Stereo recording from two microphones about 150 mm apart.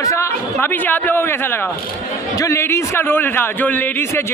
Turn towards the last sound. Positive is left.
turn(degrees=15)  # may be behind; listen again after turning